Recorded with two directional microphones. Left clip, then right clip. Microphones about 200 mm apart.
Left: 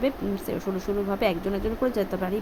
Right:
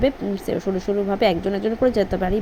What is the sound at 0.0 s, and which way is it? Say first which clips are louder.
A woman's voice: right 6 dB; 10° right (ahead or behind).